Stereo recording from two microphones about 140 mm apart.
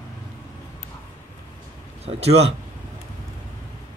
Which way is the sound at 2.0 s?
45° right (ahead or behind).